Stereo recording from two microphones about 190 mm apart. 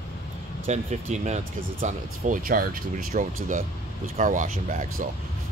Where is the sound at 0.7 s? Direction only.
35° right (ahead or behind).